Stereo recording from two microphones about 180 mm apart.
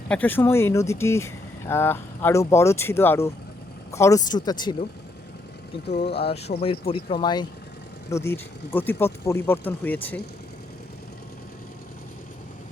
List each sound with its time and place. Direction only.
0.1 s speech: 10° left (ahead or behind)
6.2 s speech: 35° left (ahead or behind)
8.1 s speech: 15° left (ahead or behind)